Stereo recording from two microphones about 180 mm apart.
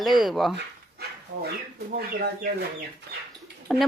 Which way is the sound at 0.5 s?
60° right (ahead or behind).